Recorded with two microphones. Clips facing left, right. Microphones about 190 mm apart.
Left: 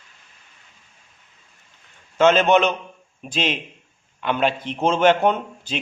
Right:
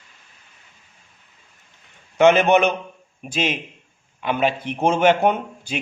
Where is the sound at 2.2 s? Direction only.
15° right (ahead or behind).